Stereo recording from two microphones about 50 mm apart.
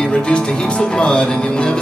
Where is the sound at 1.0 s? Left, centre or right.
Left.